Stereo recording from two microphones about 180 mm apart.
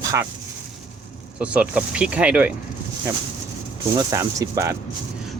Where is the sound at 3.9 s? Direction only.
20° right (ahead or behind).